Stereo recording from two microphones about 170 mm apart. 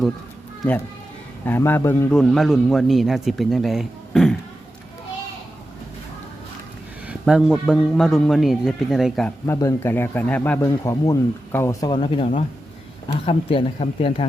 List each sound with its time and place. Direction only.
1.5 s speech: 15° left (ahead or behind)
2.1 s a man's voice: centre (ahead or behind)
7.1 s a man's voice: 5° right (ahead or behind)
9.5 s speech: 15° left (ahead or behind)
10.6 s speech: 20° left (ahead or behind)